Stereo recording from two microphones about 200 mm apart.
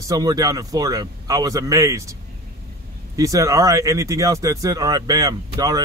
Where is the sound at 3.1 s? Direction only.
15° right (ahead or behind).